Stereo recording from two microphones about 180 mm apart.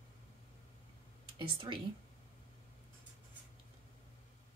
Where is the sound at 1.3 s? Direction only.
25° right (ahead or behind).